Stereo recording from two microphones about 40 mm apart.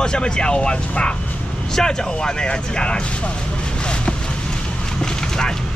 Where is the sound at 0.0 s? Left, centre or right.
Left.